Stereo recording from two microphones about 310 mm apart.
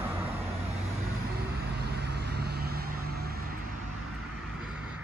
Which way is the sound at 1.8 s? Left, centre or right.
Right.